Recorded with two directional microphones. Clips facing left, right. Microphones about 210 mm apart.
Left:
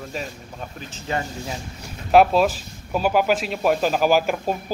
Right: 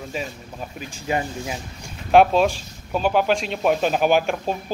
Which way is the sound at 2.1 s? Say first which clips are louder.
Even; 5° left (ahead or behind).